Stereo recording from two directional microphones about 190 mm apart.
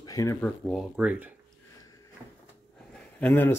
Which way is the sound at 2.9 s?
5° left (ahead or behind).